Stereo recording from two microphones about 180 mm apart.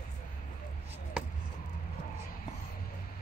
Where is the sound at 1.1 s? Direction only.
5° right (ahead or behind).